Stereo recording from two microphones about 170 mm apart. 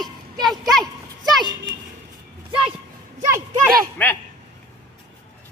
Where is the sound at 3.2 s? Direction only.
15° right (ahead or behind).